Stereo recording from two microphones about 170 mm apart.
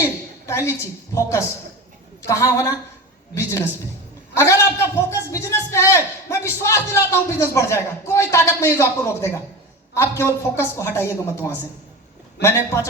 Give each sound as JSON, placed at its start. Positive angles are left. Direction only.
{"t": 0.4, "sound": "a man's voice", "side_deg": 15}